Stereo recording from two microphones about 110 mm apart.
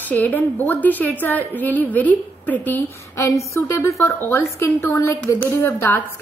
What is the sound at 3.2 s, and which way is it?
A woman's voice, 25° left (ahead or behind).